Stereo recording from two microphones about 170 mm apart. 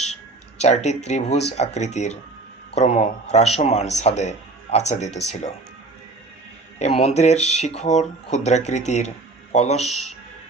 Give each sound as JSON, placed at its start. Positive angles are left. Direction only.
{"t": 0.6, "sound": "speech", "side_deg": 40}
{"t": 6.7, "sound": "speech", "side_deg": 40}